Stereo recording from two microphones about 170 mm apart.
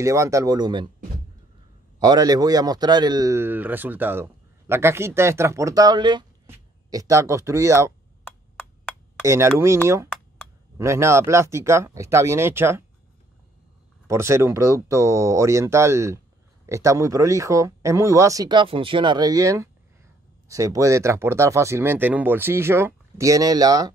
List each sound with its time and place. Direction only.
0.0 s a man's voice: 20° right (ahead or behind)
2.0 s a man's voice: 25° right (ahead or behind)
9.2 s speech: 15° right (ahead or behind)
10.8 s speech: 15° right (ahead or behind)
14.0 s a man's voice: 15° right (ahead or behind)